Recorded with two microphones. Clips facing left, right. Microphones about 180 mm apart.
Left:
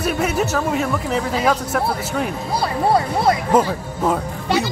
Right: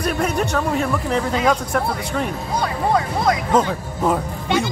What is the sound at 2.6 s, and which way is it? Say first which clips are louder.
Speech: left 2 dB; 35° left (ahead or behind).